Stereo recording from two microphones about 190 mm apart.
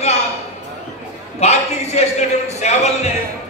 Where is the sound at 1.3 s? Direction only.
35° left (ahead or behind).